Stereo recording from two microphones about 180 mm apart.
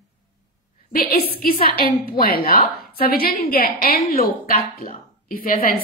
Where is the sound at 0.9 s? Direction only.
60° left (ahead or behind).